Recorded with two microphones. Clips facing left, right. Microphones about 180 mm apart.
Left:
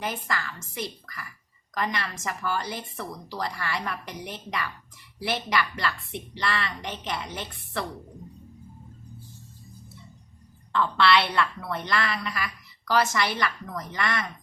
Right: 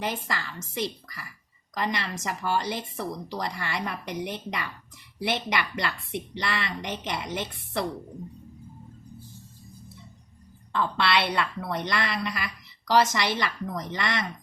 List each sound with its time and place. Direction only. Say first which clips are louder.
0.0 s speech: even; 25° right (ahead or behind)
10.8 s speech: left 3 dB; 20° right (ahead or behind)